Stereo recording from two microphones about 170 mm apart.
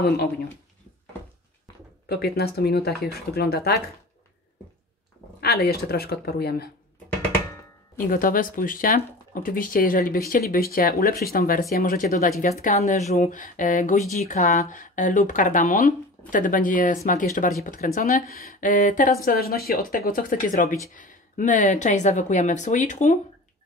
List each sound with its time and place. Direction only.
2.0 s speech: 70° left (ahead or behind)
5.4 s speech: 70° left (ahead or behind)
8.0 s speech: 55° left (ahead or behind)
19.2 s speech: 65° left (ahead or behind); by 23.1 s 45° left (ahead or behind)